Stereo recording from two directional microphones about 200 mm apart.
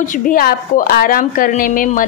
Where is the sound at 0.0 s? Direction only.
40° left (ahead or behind).